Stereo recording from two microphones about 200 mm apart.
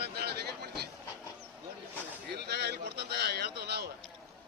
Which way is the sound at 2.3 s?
55° right (ahead or behind).